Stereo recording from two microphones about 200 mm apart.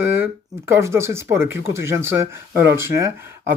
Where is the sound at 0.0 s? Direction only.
10° right (ahead or behind).